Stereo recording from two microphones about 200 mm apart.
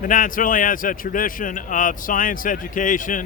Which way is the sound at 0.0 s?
40° left (ahead or behind).